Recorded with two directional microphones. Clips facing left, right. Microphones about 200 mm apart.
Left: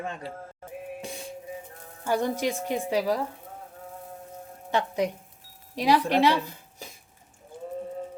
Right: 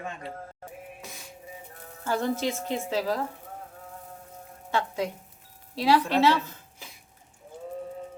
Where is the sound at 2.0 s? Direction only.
15° left (ahead or behind).